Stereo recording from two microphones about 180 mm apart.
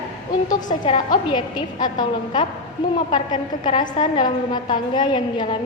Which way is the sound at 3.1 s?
25° left (ahead or behind).